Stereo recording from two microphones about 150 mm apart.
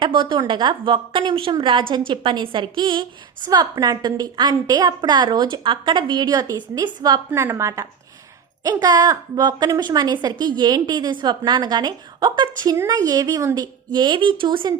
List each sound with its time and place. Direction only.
0.0 s a woman's voice: 30° right (ahead or behind)